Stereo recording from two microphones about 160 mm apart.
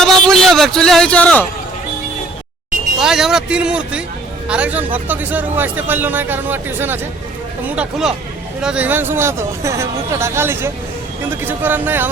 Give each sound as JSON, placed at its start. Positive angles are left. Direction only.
{"t": 0.0, "sound": "a man's voice", "side_deg": 5}
{"t": 3.0, "sound": "speech", "side_deg": -5}